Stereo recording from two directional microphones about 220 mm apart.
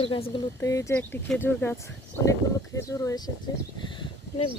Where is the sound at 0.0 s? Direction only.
25° left (ahead or behind).